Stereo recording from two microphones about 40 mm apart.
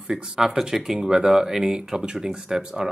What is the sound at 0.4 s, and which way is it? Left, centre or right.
Speech, centre.